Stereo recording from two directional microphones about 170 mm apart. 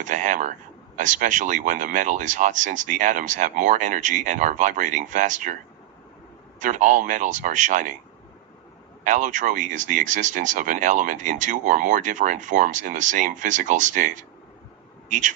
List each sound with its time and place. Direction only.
0.0 s speech: 50° right (ahead or behind)
6.6 s speech: 45° right (ahead or behind)
9.0 s speech: 45° right (ahead or behind)